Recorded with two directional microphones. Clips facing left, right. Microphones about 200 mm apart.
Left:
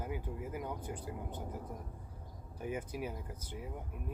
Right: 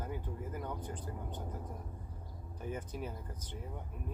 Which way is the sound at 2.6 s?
10° left (ahead or behind).